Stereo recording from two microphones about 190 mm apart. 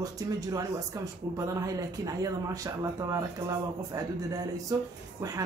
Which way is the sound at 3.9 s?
20° right (ahead or behind).